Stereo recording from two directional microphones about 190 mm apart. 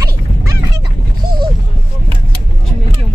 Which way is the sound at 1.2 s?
50° right (ahead or behind).